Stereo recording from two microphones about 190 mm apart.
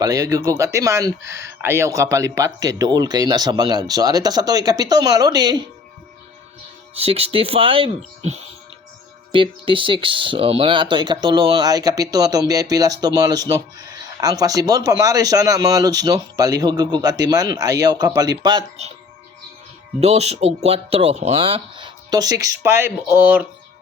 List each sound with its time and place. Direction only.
0.0 s speech: 20° right (ahead or behind)
6.9 s speech: 30° right (ahead or behind)
20.0 s speech: 35° right (ahead or behind); by 23.5 s 10° right (ahead or behind)